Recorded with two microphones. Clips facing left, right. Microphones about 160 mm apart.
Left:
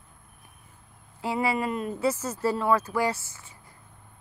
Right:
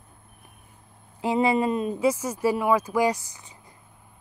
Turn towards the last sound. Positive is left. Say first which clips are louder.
# right 4 dB
turn(degrees=-15)  # may be behind; listen again after turning